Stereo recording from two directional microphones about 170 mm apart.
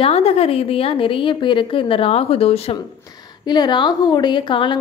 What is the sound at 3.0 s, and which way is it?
A woman's voice, 25° left (ahead or behind).